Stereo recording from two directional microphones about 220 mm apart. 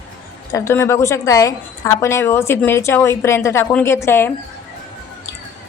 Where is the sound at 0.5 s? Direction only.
10° left (ahead or behind).